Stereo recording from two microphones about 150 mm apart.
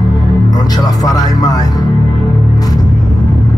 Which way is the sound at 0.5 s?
25° left (ahead or behind).